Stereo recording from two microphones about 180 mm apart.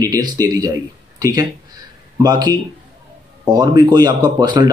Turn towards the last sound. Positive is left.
turn(degrees=-25)  # may be behind; listen again after turning